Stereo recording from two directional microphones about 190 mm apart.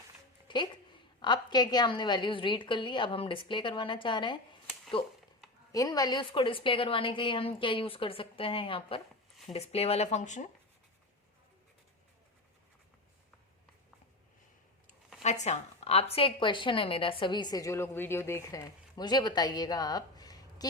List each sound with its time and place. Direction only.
0.4 s music: 25° left (ahead or behind)
1.2 s a woman's voice: 25° left (ahead or behind); by 10.4 s 40° left (ahead or behind)
15.2 s a woman's voice: 35° left (ahead or behind); by 20.7 s 20° left (ahead or behind)